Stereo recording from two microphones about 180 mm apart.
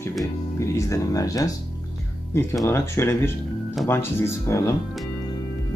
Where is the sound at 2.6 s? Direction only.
15° left (ahead or behind).